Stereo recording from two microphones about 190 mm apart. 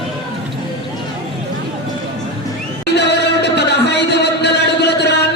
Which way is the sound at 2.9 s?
60° left (ahead or behind).